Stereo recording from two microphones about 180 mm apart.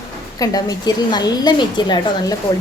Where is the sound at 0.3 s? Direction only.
20° left (ahead or behind).